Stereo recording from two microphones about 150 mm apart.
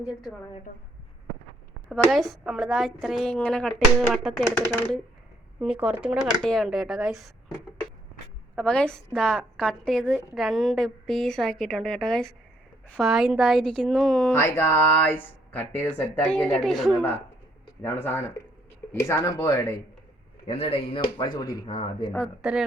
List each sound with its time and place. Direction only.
0.0 s a woman's voice: 10° right (ahead or behind)
1.9 s a woman's voice: centre (ahead or behind)
5.5 s a woman's voice: 5° right (ahead or behind)
8.5 s a woman's voice: 5° left (ahead or behind)
14.3 s speech: 15° left (ahead or behind); by 17.0 s centre (ahead or behind)
18.0 s speech: 15° left (ahead or behind)
20.5 s speech: 40° left (ahead or behind)
22.4 s a woman's voice: 5° right (ahead or behind)